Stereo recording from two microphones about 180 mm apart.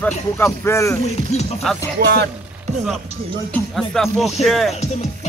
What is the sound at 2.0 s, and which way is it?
Speech, 75° right (ahead or behind).